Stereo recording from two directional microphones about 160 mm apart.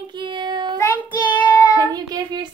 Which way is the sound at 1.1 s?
30° left (ahead or behind).